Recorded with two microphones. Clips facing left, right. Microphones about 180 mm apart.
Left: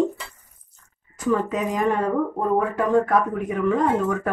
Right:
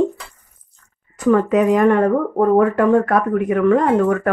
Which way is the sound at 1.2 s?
65° right (ahead or behind).